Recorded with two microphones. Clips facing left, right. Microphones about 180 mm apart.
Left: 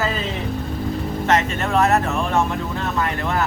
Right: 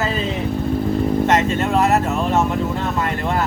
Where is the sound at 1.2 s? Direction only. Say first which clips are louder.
Right 3 dB; 15° right (ahead or behind).